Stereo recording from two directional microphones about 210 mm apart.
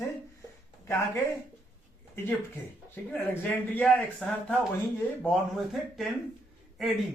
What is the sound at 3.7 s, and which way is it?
Speech, 5° left (ahead or behind).